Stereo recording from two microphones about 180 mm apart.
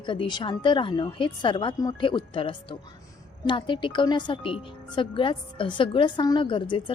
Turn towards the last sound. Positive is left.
turn(degrees=25)  # may be behind; listen again after turning